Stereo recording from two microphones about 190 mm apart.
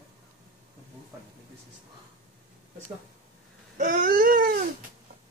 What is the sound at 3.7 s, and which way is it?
Baby cry, 45° right (ahead or behind).